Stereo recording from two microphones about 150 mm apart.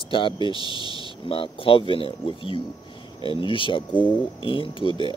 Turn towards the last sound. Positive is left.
turn(degrees=35)  # may be behind; listen again after turning